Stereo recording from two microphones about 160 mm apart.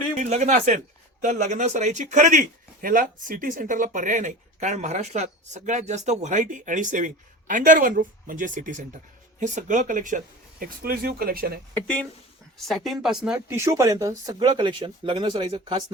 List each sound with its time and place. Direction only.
0.2 s speech: 50° right (ahead or behind); by 11.6 s 70° right (ahead or behind)
11.7 s speech: 10° left (ahead or behind)
13.5 s speech: 20° right (ahead or behind)